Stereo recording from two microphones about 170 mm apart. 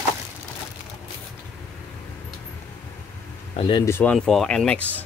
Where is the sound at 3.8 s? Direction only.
10° left (ahead or behind).